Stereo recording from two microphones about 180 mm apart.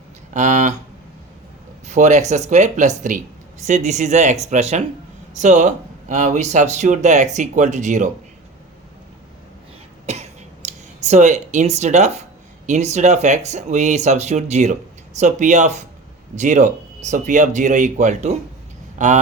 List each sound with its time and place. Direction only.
0.3 s speech: 45° right (ahead or behind)
1.9 s speech: 40° right (ahead or behind)
10.1 s cough: 35° right (ahead or behind)
10.7 s speech: 40° right (ahead or behind)